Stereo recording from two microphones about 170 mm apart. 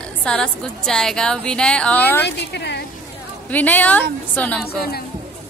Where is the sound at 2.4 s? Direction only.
85° left.